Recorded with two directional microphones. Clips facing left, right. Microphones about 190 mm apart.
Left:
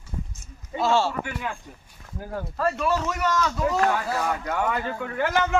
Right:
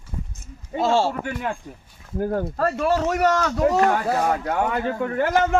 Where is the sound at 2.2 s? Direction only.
50° right (ahead or behind).